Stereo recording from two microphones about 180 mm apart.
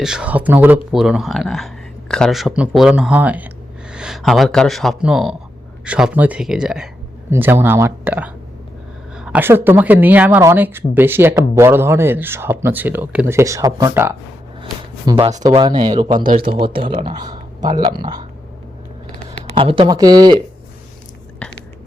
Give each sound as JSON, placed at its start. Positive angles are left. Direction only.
{"t": 0.0, "sound": "speech", "side_deg": -5}
{"t": 14.6, "sound": "a sound", "side_deg": -30}
{"t": 15.5, "sound": "speech", "side_deg": -25}
{"t": 16.1, "sound": "speech", "side_deg": -45}
{"t": 16.5, "sound": "speech", "side_deg": -30}
{"t": 19.3, "sound": "a sound", "side_deg": 90}
{"t": 19.5, "sound": "speech", "side_deg": -30}